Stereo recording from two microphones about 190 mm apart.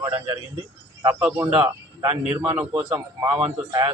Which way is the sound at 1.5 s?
30° right (ahead or behind).